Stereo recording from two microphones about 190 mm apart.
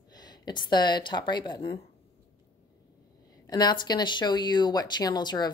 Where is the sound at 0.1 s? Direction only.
20° left (ahead or behind).